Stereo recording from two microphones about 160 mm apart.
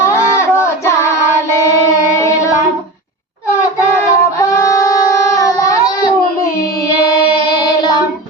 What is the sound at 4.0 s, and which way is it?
Child singing, 20° left (ahead or behind).